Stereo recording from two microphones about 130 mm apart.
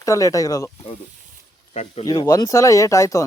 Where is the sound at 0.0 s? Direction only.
25° left (ahead or behind).